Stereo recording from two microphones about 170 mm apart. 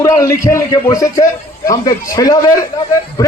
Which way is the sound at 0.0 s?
20° left (ahead or behind).